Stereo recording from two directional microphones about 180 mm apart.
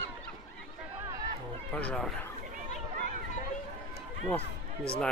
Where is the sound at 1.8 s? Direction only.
5° left (ahead or behind).